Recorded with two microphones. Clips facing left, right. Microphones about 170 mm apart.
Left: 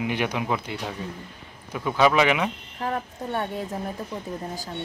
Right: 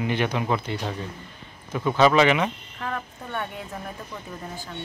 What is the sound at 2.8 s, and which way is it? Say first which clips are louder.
Speech: left 4 dB; 30° left (ahead or behind).